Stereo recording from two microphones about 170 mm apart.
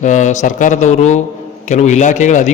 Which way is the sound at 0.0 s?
45° left (ahead or behind).